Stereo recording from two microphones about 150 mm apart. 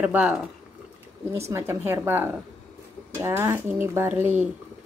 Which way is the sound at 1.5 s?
15° right (ahead or behind).